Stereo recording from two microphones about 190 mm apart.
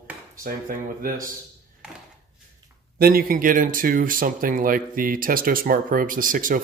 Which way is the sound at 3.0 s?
50° right (ahead or behind).